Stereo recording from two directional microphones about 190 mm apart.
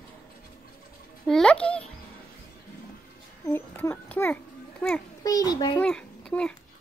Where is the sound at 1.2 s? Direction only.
5° left (ahead or behind).